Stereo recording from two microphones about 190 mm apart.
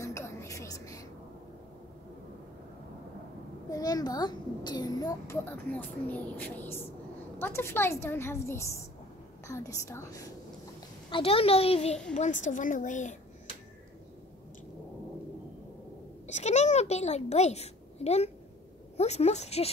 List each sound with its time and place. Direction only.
0.0 s music: 15° left (ahead or behind)
3.7 s a child's voice: 20° left (ahead or behind)
11.1 s a woman's voice: 30° left (ahead or behind)
16.3 s a sound: 35° left (ahead or behind)
18.9 s a woman's voice: 35° left (ahead or behind)